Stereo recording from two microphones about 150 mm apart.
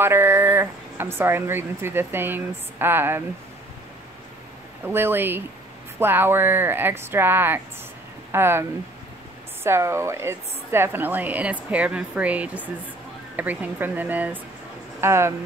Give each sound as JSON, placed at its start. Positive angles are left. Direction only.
{"t": 0.0, "sound": "speech", "side_deg": -15}
{"t": 4.8, "sound": "speech", "side_deg": -15}